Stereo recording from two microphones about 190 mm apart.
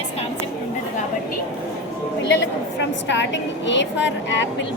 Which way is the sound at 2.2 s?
65° left (ahead or behind).